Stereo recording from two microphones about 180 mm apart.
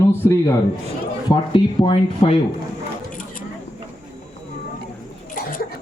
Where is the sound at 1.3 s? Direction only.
30° left (ahead or behind).